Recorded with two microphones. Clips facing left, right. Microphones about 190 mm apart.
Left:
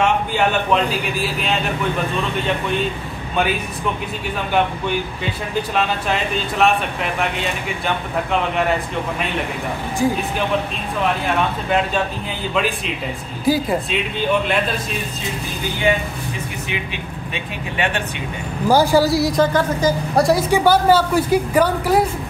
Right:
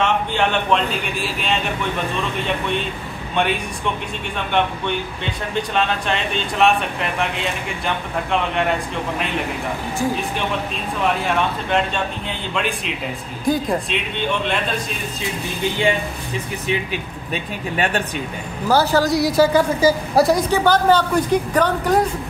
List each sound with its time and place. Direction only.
0.0 s speech: 5° left (ahead or behind)
3.3 s speech: 5° left (ahead or behind)
5.2 s speech: 5° left (ahead or behind)
11.2 s speech: 5° left (ahead or behind)
17.3 s speech: 40° right (ahead or behind)
18.7 s speech: 10° left (ahead or behind)
20.5 s a woman's voice: 10° left (ahead or behind)